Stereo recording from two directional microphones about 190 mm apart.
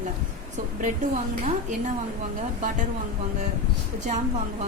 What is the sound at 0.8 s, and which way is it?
Speech, 40° right (ahead or behind).